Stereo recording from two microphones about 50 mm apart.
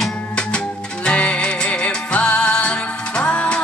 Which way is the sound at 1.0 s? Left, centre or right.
Left.